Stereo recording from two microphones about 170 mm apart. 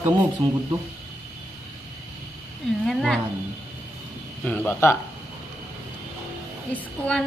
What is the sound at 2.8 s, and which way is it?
Roaring cats, 5° left (ahead or behind).